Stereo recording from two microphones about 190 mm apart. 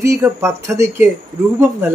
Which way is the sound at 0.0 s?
15° right (ahead or behind).